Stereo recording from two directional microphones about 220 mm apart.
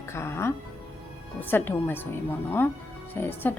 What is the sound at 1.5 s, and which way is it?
Speech, 10° left (ahead or behind).